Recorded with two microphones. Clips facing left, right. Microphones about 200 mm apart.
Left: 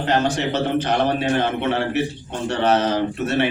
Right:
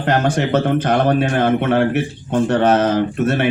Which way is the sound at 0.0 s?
55° right (ahead or behind).